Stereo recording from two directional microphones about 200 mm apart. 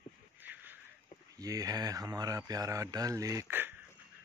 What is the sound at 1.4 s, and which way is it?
Speech, 15° right (ahead or behind).